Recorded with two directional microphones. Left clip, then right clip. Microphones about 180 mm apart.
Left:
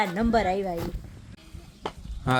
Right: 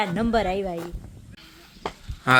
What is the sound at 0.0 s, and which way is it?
Speech, centre (ahead or behind).